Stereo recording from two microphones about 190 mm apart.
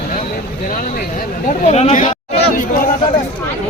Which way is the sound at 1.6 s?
35° left (ahead or behind).